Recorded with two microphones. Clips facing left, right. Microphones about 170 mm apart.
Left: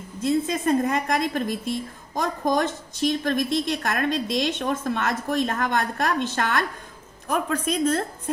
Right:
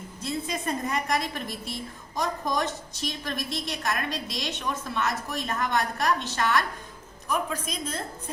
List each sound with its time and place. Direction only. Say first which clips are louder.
0.2 s a woman's voice: left 9 dB; 50° left (ahead or behind)